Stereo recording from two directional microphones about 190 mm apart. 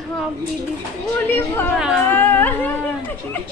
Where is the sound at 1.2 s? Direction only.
10° left (ahead or behind).